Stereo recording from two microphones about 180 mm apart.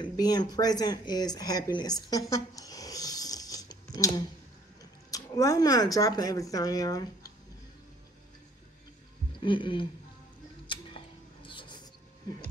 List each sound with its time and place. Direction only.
0.0 s speech: 20° left (ahead or behind)
1.8 s zipper: 20° left (ahead or behind)
5.1 s speech: 20° left (ahead or behind)
9.4 s speech: 25° left (ahead or behind)
11.4 s music: 25° left (ahead or behind)